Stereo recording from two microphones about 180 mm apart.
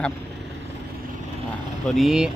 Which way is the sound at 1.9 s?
Centre (ahead or behind).